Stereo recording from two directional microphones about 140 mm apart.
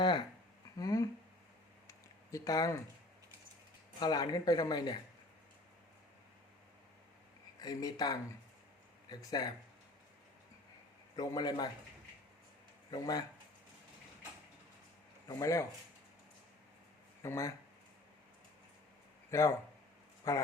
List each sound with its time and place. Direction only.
0.8 s speech: 25° left (ahead or behind)
1.9 s a sound: 25° left (ahead or behind)
4.0 s speech: 30° left (ahead or behind)
7.6 s speech: 30° left (ahead or behind)
11.2 s speech: 30° left (ahead or behind)
12.9 s speech: 25° left (ahead or behind)
15.4 s speech: 20° left (ahead or behind)
17.2 s speech: 20° left (ahead or behind)
19.3 s speech: 20° left (ahead or behind)